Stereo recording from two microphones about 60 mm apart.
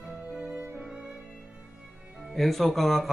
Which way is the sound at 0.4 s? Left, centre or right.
Right.